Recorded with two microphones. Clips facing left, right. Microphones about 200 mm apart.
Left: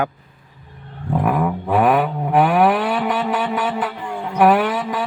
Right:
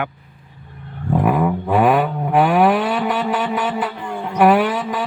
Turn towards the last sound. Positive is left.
turn(degrees=0)  # may be behind; listen again after turning